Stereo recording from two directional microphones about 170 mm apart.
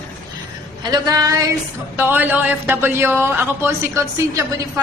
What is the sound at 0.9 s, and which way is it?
A woman's voice, 20° right (ahead or behind).